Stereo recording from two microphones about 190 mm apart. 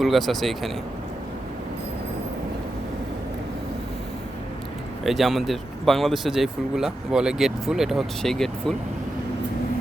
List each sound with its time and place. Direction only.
0.0 s speech: centre (ahead or behind)
5.0 s speech: centre (ahead or behind)